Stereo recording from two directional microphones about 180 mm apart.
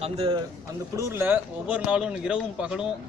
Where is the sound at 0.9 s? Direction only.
15° right (ahead or behind).